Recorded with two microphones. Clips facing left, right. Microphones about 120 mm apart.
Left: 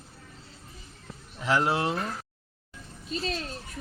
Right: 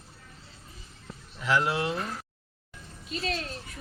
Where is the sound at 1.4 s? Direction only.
35° left (ahead or behind).